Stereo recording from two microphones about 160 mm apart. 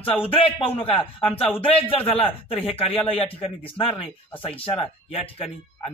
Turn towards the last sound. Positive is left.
turn(degrees=35)  # may be behind; listen again after turning